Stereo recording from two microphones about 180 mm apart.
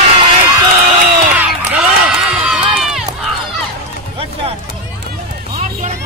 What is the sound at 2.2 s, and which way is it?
Run, 5° right (ahead or behind).